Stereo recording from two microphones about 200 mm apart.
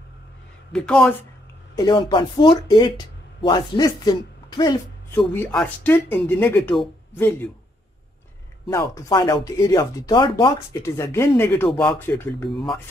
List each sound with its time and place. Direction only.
0.7 s speech: 5° left (ahead or behind)
1.8 s speech: 25° left (ahead or behind); by 7.3 s 5° left (ahead or behind)
8.6 s speech: 15° left (ahead or behind)
12.4 s speech: centre (ahead or behind)